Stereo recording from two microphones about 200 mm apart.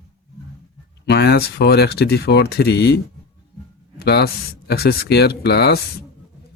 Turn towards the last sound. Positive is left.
turn(degrees=55)  # may be behind; listen again after turning